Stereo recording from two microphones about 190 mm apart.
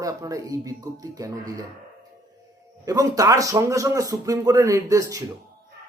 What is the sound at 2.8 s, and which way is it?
A man's voice, 20° right (ahead or behind).